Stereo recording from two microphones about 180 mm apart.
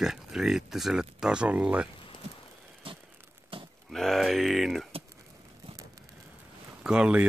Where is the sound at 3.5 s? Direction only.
30° right (ahead or behind).